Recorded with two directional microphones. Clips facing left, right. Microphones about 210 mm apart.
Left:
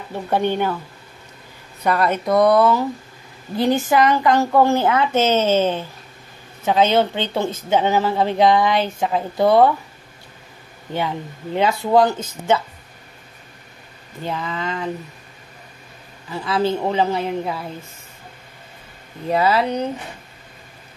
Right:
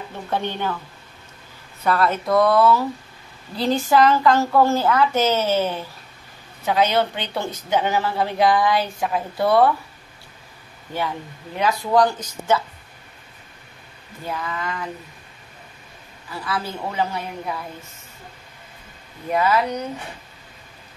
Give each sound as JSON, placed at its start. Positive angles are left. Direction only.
{"t": 1.8, "sound": "speech", "side_deg": 15}
{"t": 10.9, "sound": "speech", "side_deg": 25}
{"t": 14.2, "sound": "speech", "side_deg": 25}
{"t": 16.3, "sound": "speech", "side_deg": 25}
{"t": 19.2, "sound": "speech", "side_deg": 30}